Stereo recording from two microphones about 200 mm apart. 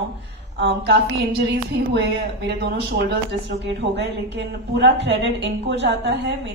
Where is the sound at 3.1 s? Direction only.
60° right (ahead or behind).